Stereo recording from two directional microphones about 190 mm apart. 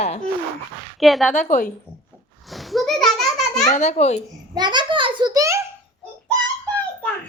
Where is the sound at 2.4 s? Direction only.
Centre (ahead or behind).